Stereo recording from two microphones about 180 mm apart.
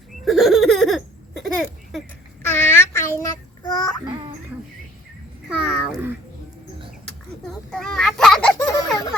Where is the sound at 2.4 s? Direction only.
15° left (ahead or behind).